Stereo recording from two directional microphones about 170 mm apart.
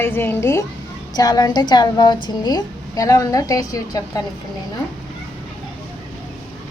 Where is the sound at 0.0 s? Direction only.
15° left (ahead or behind).